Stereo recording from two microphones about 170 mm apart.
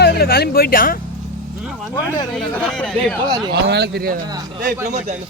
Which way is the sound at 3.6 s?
85° right.